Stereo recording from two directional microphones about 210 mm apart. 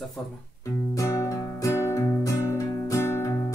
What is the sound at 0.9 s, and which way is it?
Music, 15° left (ahead or behind).